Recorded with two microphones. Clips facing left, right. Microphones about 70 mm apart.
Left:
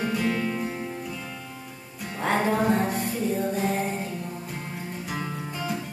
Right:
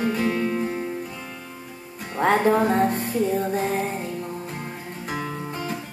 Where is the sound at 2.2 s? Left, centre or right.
Right.